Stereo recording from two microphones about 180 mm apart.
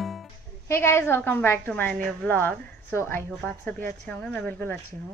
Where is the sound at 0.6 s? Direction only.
15° left (ahead or behind).